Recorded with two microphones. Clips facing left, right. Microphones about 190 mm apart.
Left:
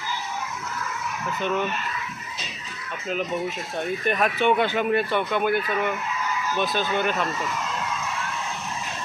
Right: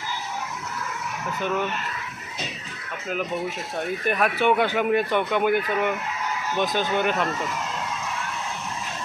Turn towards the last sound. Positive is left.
turn(degrees=-15)  # may be behind; listen again after turning